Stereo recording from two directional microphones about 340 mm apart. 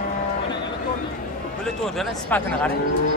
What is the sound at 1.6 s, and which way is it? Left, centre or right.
Speech, centre.